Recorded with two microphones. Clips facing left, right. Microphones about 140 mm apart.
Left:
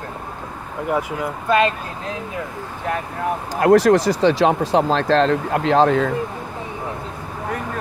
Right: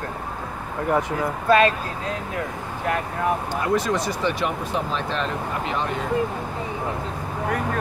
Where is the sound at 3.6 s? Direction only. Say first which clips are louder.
Left 14 dB; 75° left (ahead or behind).